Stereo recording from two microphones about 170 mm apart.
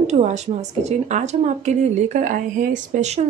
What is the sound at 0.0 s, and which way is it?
Speech, 45° right (ahead or behind).